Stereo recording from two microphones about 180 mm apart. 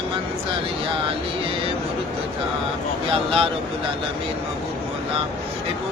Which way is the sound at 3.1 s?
30° right (ahead or behind).